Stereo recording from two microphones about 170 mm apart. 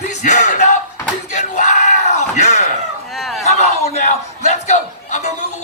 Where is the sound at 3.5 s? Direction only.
40° left (ahead or behind).